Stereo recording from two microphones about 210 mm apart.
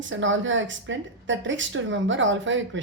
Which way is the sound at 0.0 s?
65° right (ahead or behind).